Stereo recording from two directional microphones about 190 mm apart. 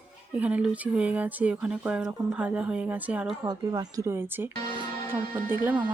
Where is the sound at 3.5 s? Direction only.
20° right (ahead or behind).